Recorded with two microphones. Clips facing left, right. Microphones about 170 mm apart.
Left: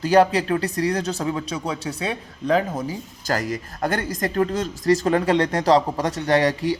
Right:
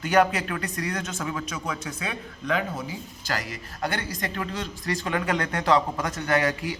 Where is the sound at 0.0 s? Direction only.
35° left (ahead or behind).